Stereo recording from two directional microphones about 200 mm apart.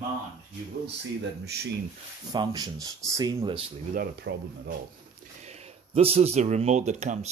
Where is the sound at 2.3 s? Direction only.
20° right (ahead or behind).